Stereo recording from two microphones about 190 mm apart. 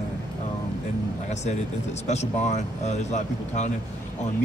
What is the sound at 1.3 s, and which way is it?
Speech, 35° left (ahead or behind).